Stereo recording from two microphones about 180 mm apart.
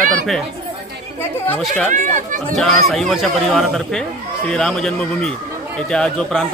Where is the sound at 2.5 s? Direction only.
Centre (ahead or behind).